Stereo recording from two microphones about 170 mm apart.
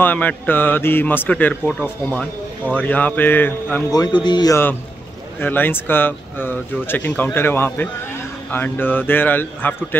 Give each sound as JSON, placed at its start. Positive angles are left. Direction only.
{"t": 0.0, "sound": "a man's voice", "side_deg": 10}
{"t": 3.9, "sound": "a man's voice", "side_deg": 25}